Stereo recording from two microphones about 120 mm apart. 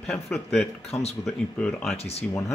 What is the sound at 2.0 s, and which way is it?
Speech, 60° left (ahead or behind).